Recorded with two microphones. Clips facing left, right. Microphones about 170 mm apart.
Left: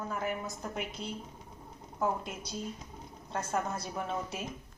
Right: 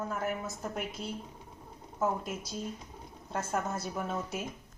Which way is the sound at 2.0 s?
Centre (ahead or behind).